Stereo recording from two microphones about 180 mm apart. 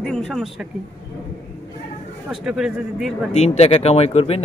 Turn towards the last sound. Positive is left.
turn(degrees=35)  # may be behind; listen again after turning